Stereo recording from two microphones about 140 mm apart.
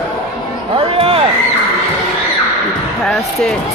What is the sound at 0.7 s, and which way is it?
Speech, 40° right (ahead or behind).